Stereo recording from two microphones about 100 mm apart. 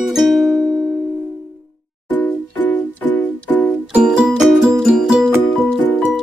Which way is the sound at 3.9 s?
5° right (ahead or behind).